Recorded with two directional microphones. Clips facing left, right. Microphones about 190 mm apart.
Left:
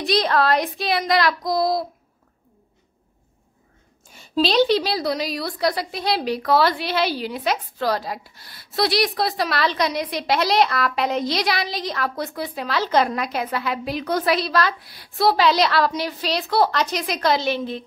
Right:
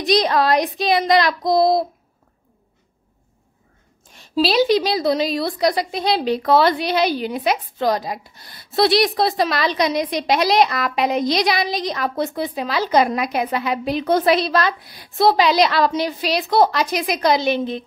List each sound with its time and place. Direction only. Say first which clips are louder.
0.0 s child singing: right 3 dB; 15° right (ahead or behind)
4.1 s a woman's voice: right 2 dB; centre (ahead or behind); by 17.8 s 20° right (ahead or behind)